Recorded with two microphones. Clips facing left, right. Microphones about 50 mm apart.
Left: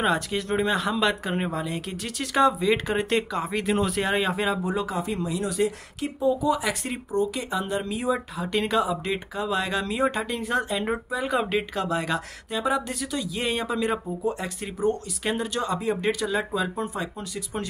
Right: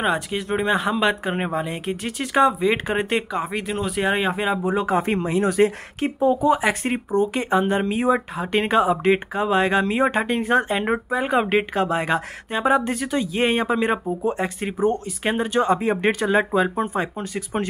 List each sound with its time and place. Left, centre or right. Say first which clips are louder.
0.0 s speech: right 2 dB; centre
3.6 s speech: right 1 dB; centre
4.1 s speech: right 3 dB; centre
4.8 s speech: right 7 dB; right